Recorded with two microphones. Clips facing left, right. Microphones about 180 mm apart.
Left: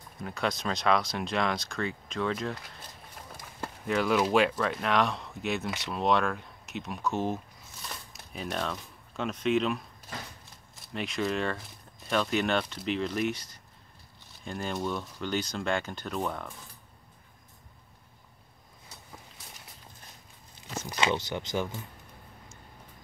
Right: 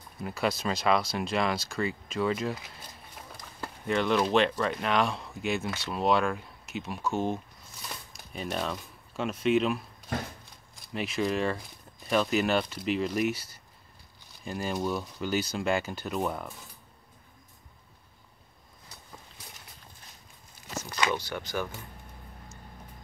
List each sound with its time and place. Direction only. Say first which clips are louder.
0.2 s speech: right 2 dB; 5° right (ahead or behind)
3.8 s speech: even; 5° left (ahead or behind)
7.8 s a sound: even; centre (ahead or behind)
10.8 s speech: right 2 dB; 5° right (ahead or behind)
20.9 s speech: left 1 dB; 20° left (ahead or behind)